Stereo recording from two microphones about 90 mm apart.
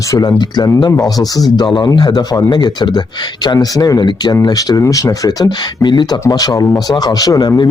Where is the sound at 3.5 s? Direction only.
45° left (ahead or behind).